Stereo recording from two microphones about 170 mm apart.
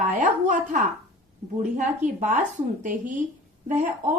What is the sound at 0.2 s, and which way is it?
Speech, 45° right (ahead or behind).